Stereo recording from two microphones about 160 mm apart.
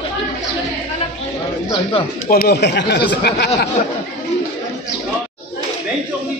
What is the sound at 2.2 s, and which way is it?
Speech, 70° left (ahead or behind).